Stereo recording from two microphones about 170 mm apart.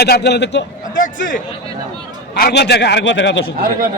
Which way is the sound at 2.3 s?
70° left (ahead or behind).